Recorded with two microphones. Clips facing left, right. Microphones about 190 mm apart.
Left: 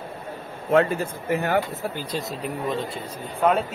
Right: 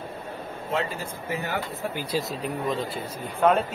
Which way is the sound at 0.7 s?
55° left (ahead or behind).